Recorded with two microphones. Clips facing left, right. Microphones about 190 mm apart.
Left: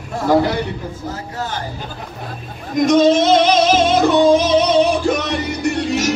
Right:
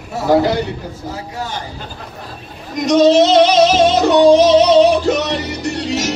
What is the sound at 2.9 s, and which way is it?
Music, 50° left (ahead or behind).